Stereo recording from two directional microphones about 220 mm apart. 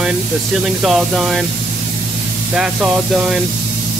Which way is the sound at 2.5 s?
5° right (ahead or behind).